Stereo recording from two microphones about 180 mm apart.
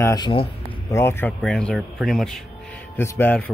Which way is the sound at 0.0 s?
20° left (ahead or behind).